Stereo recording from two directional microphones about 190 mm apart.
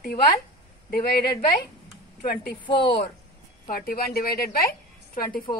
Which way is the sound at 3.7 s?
50° left (ahead or behind).